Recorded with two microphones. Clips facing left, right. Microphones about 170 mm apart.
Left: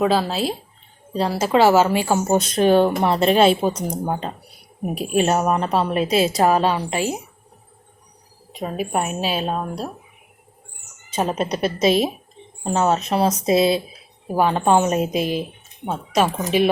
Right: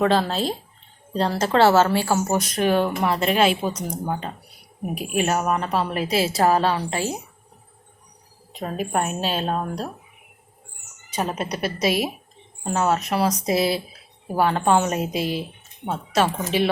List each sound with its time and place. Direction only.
0.0 s a woman's voice: 5° left (ahead or behind)
8.5 s speech: 10° left (ahead or behind)
11.1 s a woman's voice: 25° left (ahead or behind)